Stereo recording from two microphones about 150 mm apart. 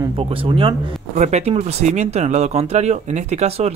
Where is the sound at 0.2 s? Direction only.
35° right (ahead or behind).